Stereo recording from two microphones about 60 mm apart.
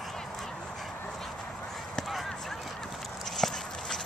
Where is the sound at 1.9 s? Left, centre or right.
Centre.